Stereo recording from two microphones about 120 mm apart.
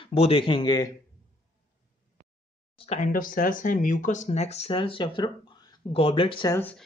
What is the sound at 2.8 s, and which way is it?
Speech, 75° left (ahead or behind).